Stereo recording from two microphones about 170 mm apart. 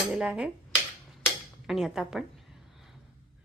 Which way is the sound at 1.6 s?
Centre (ahead or behind).